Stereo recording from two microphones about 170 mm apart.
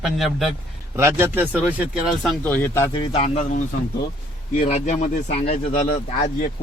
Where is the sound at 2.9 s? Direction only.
30° left (ahead or behind).